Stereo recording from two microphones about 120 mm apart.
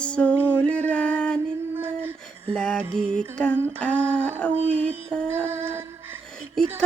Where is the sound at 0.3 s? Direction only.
15° right (ahead or behind).